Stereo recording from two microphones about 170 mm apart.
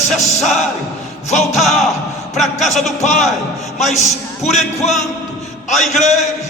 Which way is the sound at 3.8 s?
45° left (ahead or behind).